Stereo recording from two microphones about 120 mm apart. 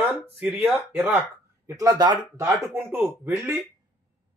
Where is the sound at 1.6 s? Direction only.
30° right (ahead or behind).